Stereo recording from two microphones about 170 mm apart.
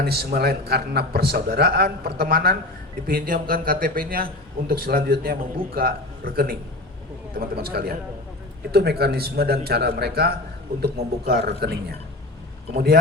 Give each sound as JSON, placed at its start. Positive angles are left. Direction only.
{"t": 0.0, "sound": "a man's voice", "side_deg": -65}